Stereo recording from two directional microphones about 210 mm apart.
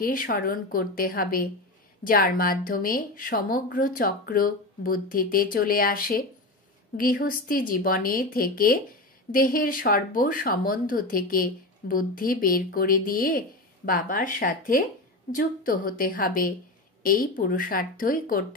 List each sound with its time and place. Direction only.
0.0 s speech: 40° left (ahead or behind)